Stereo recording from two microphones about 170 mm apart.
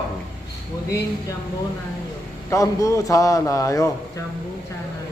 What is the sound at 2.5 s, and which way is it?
A man's voice, 20° left (ahead or behind).